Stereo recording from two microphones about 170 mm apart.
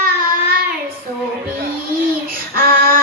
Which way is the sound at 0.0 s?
60° right (ahead or behind).